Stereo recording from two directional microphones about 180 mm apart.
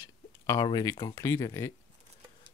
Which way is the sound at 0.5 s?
20° left (ahead or behind).